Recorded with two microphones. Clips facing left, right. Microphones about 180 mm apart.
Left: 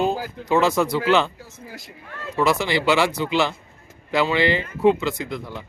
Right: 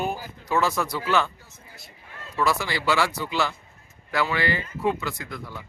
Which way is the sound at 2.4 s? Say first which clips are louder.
Left 5 dB; 20° left (ahead or behind).